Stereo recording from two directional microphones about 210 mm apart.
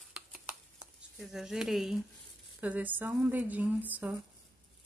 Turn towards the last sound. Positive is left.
turn(degrees=-5)  # may be behind; listen again after turning